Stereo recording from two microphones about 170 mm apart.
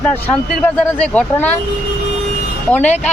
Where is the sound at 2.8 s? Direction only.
40° left (ahead or behind).